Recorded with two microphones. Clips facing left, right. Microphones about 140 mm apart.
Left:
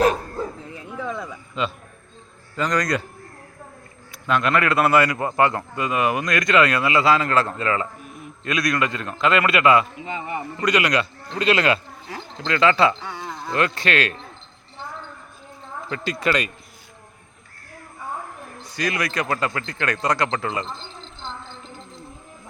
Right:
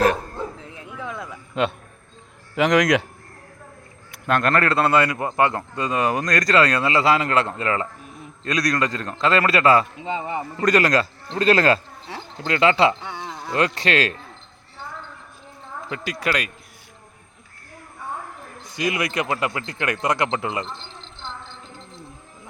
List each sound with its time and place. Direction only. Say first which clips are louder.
1.0 s a sound: left 3 dB; centre (ahead or behind)
1.6 s a man's voice: right 4 dB; 60° right (ahead or behind)
2.6 s a man's voice: right 5 dB; 90° right
4.1 s a man's voice: right 1 dB; 50° right (ahead or behind); by 10.4 s 25° right (ahead or behind)
10.6 s a man's voice: right 3 dB; 45° right (ahead or behind)
12.5 s speech: even; 25° right (ahead or behind)
16.1 s speech: left 2 dB; 5° right (ahead or behind)
18.8 s a man's voice: right 1 dB; 20° right (ahead or behind)